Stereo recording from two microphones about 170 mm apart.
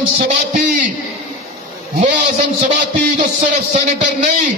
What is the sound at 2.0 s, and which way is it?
A man's voice, 45° right (ahead or behind).